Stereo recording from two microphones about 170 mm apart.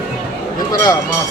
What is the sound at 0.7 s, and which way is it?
Speech, 20° left (ahead or behind).